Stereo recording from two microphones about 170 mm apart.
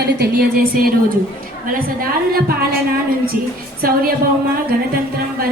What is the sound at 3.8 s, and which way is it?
Speech, 60° right (ahead or behind).